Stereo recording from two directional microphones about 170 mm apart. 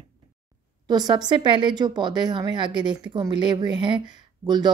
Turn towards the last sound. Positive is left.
turn(degrees=-25)  # may be behind; listen again after turning